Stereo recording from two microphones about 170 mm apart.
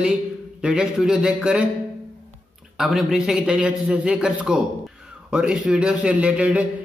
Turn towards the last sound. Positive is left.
turn(degrees=-10)  # may be behind; listen again after turning